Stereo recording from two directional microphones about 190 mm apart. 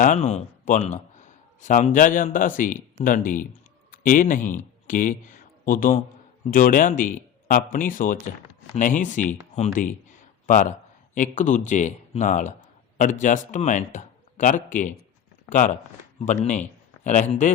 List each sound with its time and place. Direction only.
0.2 s a man's voice: 35° left (ahead or behind)